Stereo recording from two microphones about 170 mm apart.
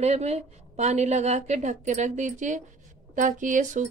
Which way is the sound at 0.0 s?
40° right (ahead or behind).